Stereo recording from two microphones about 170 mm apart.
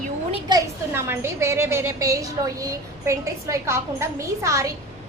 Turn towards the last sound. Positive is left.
turn(degrees=-20)  # may be behind; listen again after turning